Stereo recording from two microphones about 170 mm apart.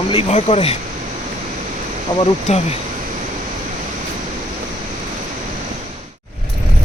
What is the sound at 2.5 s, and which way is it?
Speech, 40° left (ahead or behind).